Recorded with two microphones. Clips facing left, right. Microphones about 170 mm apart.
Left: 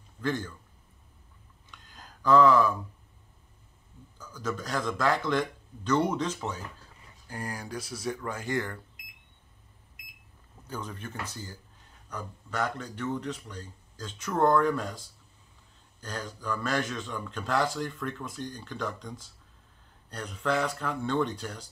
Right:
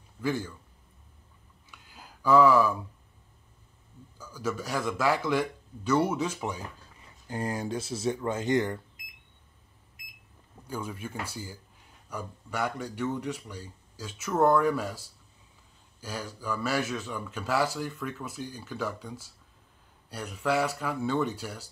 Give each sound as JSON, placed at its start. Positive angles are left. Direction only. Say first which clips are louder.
{"t": 0.2, "sound": "speech", "louder": "right 1 dB", "side_deg": -10}
{"t": 1.7, "sound": "a sound", "louder": "even", "side_deg": -10}
{"t": 4.2, "sound": "speech", "louder": "right 1 dB", "side_deg": -10}
{"t": 7.2, "sound": "speech", "louder": "right 6 dB", "side_deg": -25}
{"t": 10.7, "sound": "speech", "louder": "right 2 dB", "side_deg": -10}